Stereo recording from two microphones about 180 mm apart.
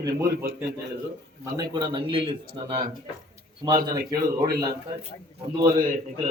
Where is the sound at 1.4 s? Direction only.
25° right (ahead or behind).